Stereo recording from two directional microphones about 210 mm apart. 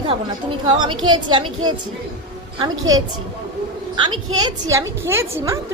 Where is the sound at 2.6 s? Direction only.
15° right (ahead or behind).